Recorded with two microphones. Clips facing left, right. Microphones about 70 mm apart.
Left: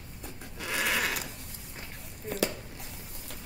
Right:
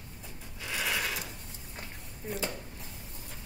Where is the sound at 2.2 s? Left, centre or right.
Centre.